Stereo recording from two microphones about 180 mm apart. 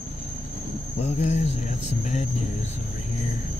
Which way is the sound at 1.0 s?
40° left (ahead or behind).